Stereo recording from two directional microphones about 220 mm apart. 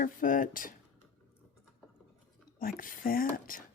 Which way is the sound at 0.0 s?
40° left (ahead or behind).